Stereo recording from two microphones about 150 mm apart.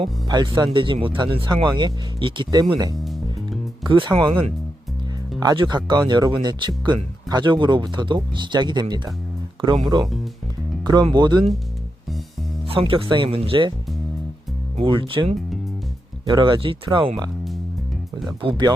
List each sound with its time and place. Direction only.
0.0 s speech: 30° right (ahead or behind)
12.6 s speech: 35° right (ahead or behind)
14.8 s speech: 35° right (ahead or behind)
18.3 s speech: 30° right (ahead or behind)